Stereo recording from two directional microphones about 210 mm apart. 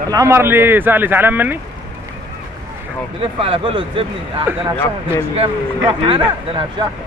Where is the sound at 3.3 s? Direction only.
25° right (ahead or behind).